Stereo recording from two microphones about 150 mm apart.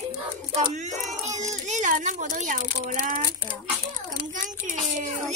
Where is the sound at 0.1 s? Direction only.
50° right (ahead or behind).